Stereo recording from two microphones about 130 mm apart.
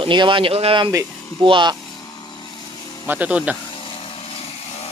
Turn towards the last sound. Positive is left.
turn(degrees=50)  # may be behind; listen again after turning